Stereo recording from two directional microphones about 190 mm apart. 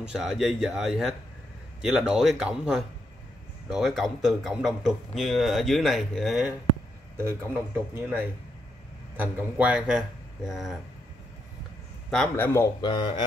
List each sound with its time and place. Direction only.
0.1 s speech: centre (ahead or behind)
7.9 s speech: 10° right (ahead or behind)
12.1 s speech: 5° left (ahead or behind)
12.5 s a man's voice: 25° left (ahead or behind)